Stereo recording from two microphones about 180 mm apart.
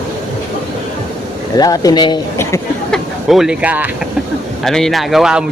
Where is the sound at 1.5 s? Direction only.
20° left (ahead or behind).